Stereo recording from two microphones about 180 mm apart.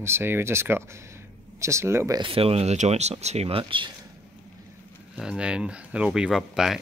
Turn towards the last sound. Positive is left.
turn(degrees=-5)  # may be behind; listen again after turning